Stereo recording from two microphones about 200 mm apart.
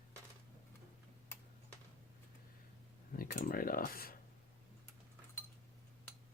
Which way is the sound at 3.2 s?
50° left (ahead or behind).